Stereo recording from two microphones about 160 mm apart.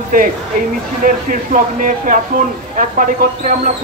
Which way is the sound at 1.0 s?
55° right (ahead or behind).